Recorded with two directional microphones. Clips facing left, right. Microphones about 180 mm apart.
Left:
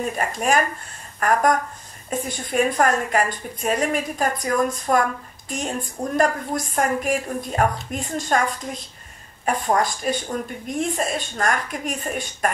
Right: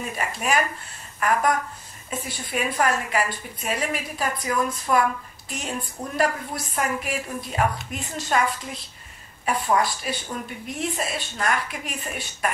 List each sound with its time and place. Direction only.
0.0 s a woman's voice: 45° left (ahead or behind)